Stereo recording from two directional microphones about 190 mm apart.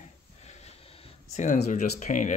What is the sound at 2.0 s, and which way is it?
Speech, 40° left (ahead or behind).